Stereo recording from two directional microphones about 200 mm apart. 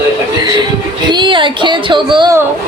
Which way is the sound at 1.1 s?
25° right (ahead or behind).